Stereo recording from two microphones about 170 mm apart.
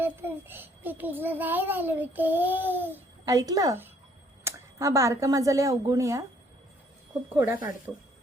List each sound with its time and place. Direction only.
0.0 s a child's voice: 10° right (ahead or behind)
7.3 s a child's voice: 15° right (ahead or behind)
7.9 s speech: centre (ahead or behind)